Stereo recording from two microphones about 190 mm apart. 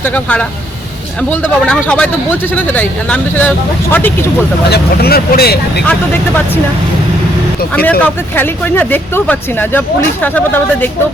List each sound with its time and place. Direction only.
0.0 s speech: 10° left (ahead or behind)
4.7 s speech: 55° left (ahead or behind)
7.9 s speech: 10° left (ahead or behind)